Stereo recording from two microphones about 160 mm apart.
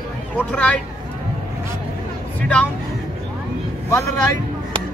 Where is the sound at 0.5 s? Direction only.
5° left (ahead or behind).